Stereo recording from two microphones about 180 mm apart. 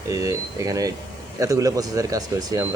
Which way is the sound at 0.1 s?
20° right (ahead or behind).